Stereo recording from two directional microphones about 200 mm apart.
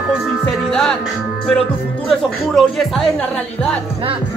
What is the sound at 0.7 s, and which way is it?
Speech, centre (ahead or behind).